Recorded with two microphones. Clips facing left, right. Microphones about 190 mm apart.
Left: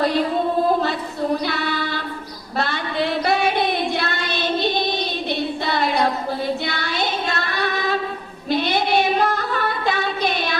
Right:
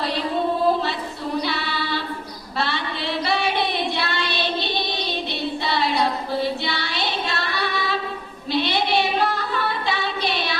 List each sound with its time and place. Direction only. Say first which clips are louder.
1.5 s child singing: left 2 dB; 50° left (ahead or behind)
8.4 s female singing: left 2 dB; 45° left (ahead or behind)